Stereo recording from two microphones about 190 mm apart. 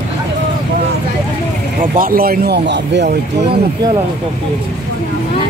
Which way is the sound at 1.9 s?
50° right (ahead or behind).